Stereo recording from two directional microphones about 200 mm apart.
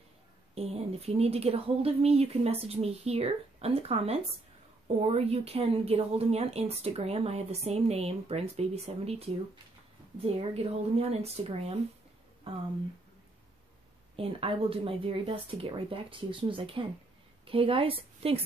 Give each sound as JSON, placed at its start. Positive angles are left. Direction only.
{"t": 0.6, "sound": "speech", "side_deg": -30}
{"t": 14.1, "sound": "speech", "side_deg": -30}